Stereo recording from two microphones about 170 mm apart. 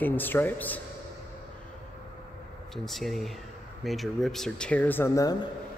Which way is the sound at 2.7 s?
Centre (ahead or behind).